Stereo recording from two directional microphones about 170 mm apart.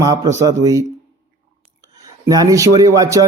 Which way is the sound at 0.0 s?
20° right (ahead or behind).